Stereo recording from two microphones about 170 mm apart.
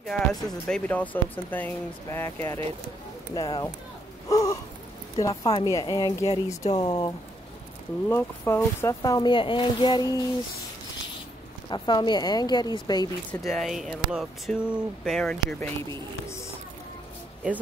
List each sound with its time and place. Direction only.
0.0 s speech: centre (ahead or behind); by 3.7 s 25° left (ahead or behind)
4.3 s a sound: 20° left (ahead or behind)
5.2 s speech: 20° left (ahead or behind)
8.1 s speech: 15° left (ahead or behind)
11.7 s speech: 25° left (ahead or behind)
13.3 s speech: centre (ahead or behind)
15.9 s speech: 15° left (ahead or behind)